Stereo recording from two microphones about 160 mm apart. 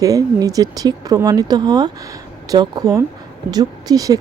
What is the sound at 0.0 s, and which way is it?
A woman's voice, 20° right (ahead or behind).